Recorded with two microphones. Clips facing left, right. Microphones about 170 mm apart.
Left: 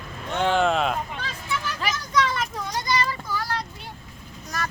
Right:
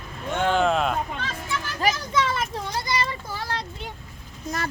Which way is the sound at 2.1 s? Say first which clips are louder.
Even; 25° right (ahead or behind).